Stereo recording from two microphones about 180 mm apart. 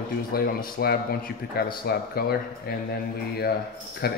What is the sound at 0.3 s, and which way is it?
Speech, 55° left (ahead or behind).